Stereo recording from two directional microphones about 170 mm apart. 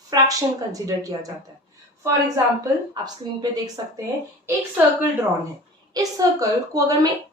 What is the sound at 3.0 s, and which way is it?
Speech, 20° right (ahead or behind).